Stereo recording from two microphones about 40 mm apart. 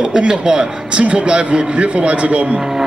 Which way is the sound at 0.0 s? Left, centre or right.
Right.